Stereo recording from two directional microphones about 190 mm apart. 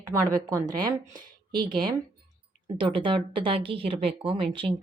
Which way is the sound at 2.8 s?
25° right (ahead or behind).